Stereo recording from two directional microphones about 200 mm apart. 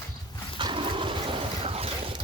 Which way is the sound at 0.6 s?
25° right (ahead or behind).